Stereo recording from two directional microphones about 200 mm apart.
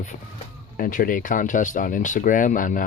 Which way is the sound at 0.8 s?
45° left (ahead or behind).